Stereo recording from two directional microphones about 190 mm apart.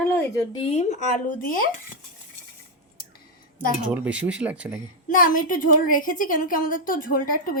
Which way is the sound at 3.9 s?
5° right (ahead or behind).